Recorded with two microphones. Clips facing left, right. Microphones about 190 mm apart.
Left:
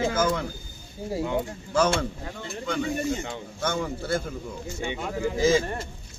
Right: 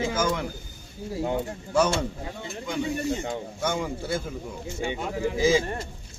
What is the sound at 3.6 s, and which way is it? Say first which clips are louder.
Speech: left 2 dB; 10° right (ahead or behind).